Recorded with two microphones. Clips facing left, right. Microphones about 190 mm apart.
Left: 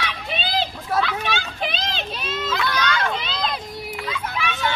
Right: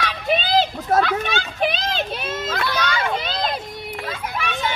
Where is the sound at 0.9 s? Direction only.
50° right (ahead or behind).